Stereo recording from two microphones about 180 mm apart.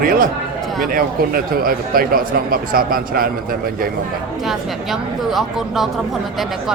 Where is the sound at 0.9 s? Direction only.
55° right (ahead or behind).